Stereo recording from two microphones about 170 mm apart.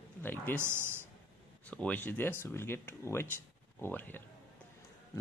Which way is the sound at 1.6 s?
5° left (ahead or behind).